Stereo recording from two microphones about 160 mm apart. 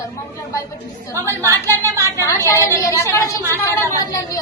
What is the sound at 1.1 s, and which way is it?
Speech, 20° right (ahead or behind).